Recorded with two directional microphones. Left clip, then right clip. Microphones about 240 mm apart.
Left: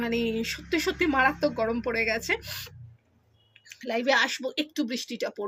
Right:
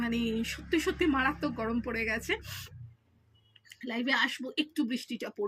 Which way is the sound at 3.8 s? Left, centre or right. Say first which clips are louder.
Left 7 dB; left.